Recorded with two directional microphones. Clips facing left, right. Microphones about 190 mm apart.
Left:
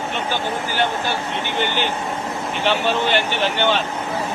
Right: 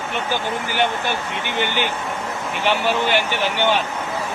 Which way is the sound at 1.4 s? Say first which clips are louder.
Even; 15° right (ahead or behind).